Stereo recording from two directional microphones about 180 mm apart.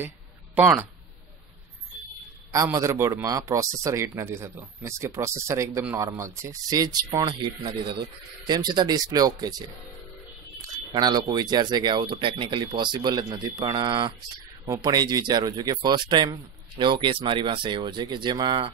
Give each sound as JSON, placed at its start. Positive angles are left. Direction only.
{"t": 0.6, "sound": "speech", "side_deg": -10}
{"t": 2.5, "sound": "speech", "side_deg": -15}
{"t": 10.9, "sound": "speech", "side_deg": -25}